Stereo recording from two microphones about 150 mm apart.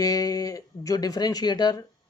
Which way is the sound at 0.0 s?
20° left (ahead or behind).